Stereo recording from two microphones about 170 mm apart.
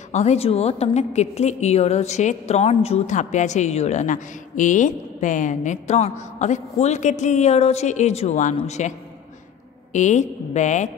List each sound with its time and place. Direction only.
0.1 s a woman's voice: 40° left (ahead or behind)
9.9 s a woman's voice: 45° left (ahead or behind)